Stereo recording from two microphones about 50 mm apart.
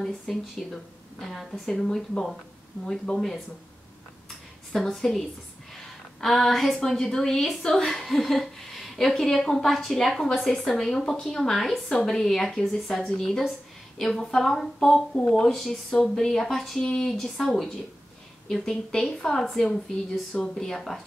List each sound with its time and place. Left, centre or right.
0.0 s a woman's voice: centre
1.7 s a woman's voice: centre
4.8 s a woman's voice: centre